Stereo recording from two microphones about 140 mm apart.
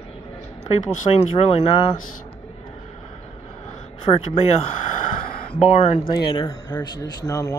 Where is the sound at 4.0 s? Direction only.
40° left (ahead or behind).